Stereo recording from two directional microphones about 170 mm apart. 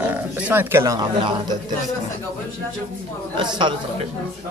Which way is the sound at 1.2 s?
30° right (ahead or behind).